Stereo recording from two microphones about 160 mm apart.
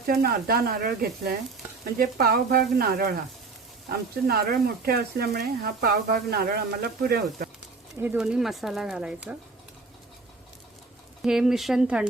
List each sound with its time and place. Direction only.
0.0 s speech: 70° right (ahead or behind)
8.0 s speech: 10° right (ahead or behind)
11.2 s speech: centre (ahead or behind)